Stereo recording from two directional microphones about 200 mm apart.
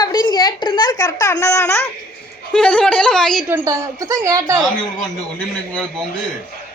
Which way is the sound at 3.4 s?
10° right (ahead or behind).